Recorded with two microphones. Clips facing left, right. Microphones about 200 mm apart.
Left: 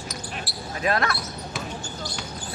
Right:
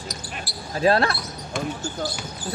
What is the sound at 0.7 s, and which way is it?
Speech, 30° right (ahead or behind).